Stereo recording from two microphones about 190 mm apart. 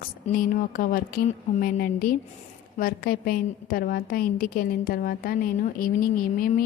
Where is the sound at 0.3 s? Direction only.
50° left (ahead or behind).